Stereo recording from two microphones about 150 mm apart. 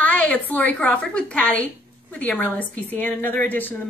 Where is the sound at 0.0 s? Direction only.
10° left (ahead or behind).